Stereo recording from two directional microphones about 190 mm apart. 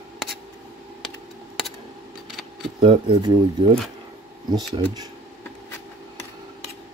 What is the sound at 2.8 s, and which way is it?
Speech, 25° right (ahead or behind).